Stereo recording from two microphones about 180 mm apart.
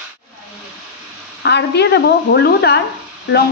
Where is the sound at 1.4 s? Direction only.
70° left (ahead or behind).